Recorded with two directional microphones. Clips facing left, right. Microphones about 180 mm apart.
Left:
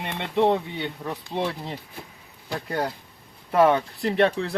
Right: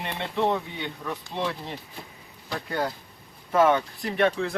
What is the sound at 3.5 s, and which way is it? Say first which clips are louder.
Speech: left 2 dB; 30° left (ahead or behind).